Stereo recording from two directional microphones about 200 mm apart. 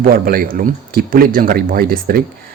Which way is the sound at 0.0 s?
45° right (ahead or behind).